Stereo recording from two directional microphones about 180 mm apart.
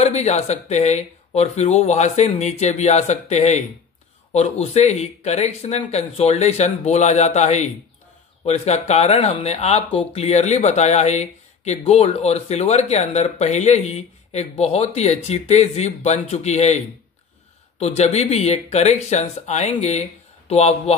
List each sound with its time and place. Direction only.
0.0 s speech: 40° left (ahead or behind)